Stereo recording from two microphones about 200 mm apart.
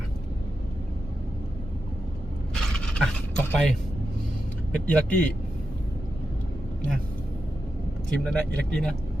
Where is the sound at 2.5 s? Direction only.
5° left (ahead or behind).